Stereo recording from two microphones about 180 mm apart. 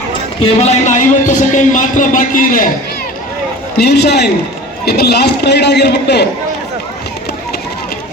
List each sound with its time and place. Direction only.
0.7 s a man's voice: 40° left (ahead or behind)
3.8 s a man's voice: 65° left (ahead or behind)